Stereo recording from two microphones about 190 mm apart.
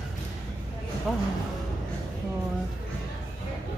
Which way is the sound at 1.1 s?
Centre (ahead or behind).